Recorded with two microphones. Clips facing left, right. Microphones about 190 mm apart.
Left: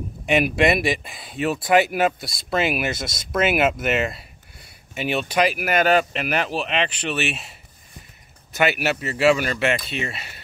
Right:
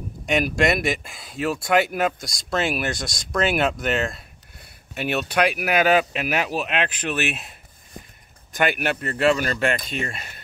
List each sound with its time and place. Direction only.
0.3 s speech: 5° left (ahead or behind)
5.3 s speech: centre (ahead or behind)
8.5 s speech: 5° left (ahead or behind)
9.8 s speech: 45° right (ahead or behind)